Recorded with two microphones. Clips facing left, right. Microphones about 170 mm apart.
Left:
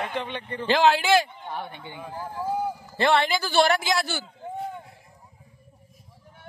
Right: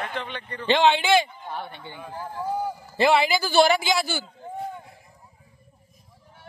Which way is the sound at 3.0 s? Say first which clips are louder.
Right 2 dB; 5° right (ahead or behind).